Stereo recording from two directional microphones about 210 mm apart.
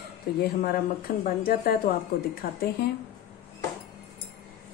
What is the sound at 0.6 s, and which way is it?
A woman's voice, 40° left (ahead or behind).